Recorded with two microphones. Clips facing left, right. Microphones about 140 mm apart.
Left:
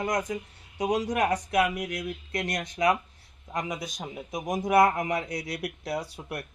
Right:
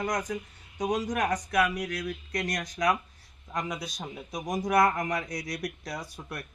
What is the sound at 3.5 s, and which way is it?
Speech, 5° left (ahead or behind).